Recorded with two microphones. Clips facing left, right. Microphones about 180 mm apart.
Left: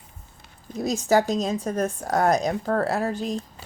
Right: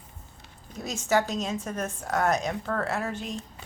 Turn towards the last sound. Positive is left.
turn(degrees=35)  # may be behind; listen again after turning